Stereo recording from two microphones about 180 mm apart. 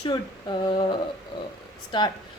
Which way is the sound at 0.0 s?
25° left (ahead or behind).